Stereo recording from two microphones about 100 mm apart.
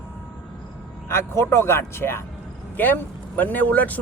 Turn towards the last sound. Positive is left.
turn(degrees=15)  # may be behind; listen again after turning